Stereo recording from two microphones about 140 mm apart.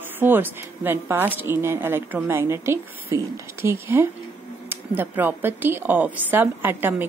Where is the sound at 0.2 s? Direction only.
15° right (ahead or behind).